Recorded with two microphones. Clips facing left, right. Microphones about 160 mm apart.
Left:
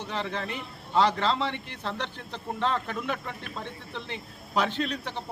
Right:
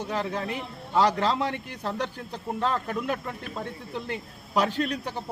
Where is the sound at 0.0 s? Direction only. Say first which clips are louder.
Right 3 dB; 10° right (ahead or behind).